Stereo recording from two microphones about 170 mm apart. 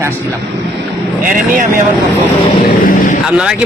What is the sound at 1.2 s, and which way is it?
Speech, 55° right (ahead or behind).